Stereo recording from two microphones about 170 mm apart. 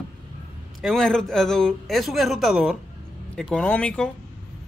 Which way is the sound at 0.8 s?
Centre (ahead or behind).